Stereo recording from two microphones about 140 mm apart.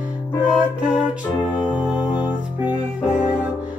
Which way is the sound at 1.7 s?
10° right (ahead or behind).